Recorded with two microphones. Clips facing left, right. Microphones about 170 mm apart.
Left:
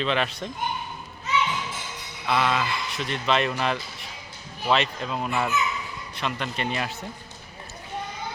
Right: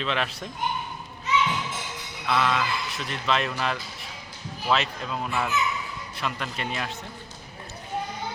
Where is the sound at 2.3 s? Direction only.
5° left (ahead or behind).